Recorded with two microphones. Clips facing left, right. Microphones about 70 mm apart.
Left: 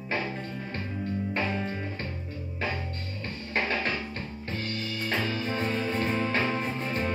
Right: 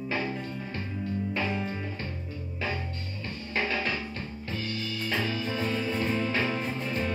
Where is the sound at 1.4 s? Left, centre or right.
Centre.